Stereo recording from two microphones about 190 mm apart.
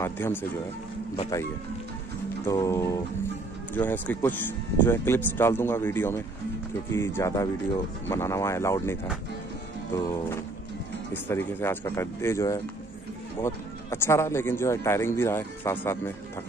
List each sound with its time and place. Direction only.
0.0 s speech: 10° left (ahead or behind)
9.9 s speech: 10° left (ahead or behind)
11.2 s speech: 10° left (ahead or behind)